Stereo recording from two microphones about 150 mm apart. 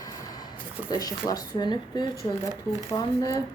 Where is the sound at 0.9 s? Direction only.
25° left (ahead or behind).